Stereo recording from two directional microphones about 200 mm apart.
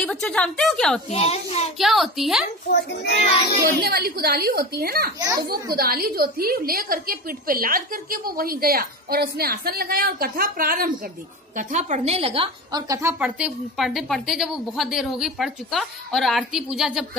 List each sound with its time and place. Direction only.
0.0 s a woman's voice: 5° left (ahead or behind)
1.0 s a child's voice: 30° left (ahead or behind)
1.8 s a woman's voice: centre (ahead or behind)
2.7 s a child's voice: 55° left (ahead or behind)
3.6 s a woman's voice: 55° right (ahead or behind)
11.5 s a woman's voice: 35° right (ahead or behind); by 13.1 s 15° right (ahead or behind)
13.2 s a woman's voice: 5° right (ahead or behind)